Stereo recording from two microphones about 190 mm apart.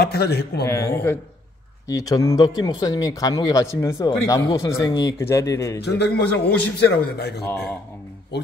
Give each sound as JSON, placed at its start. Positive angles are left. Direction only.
{"t": 0.0, "sound": "a man's voice", "side_deg": 55}
{"t": 0.7, "sound": "speech", "side_deg": 15}
{"t": 5.8, "sound": "a man's voice", "side_deg": 60}